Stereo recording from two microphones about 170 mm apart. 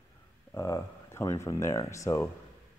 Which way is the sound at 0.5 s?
15° left (ahead or behind).